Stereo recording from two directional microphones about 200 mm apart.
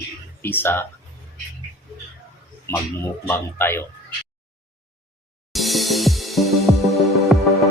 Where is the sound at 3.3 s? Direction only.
10° left (ahead or behind).